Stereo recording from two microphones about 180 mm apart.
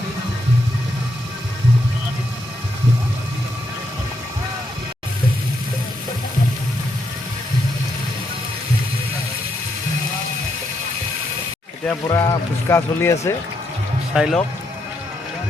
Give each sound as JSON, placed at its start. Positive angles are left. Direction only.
{"t": 12.0, "sound": "speech", "side_deg": 20}
{"t": 14.1, "sound": "speech", "side_deg": -5}